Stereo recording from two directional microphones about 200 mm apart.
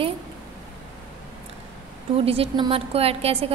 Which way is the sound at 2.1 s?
30° right (ahead or behind).